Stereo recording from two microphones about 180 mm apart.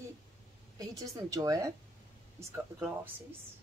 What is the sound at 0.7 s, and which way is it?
A woman's voice, 20° right (ahead or behind).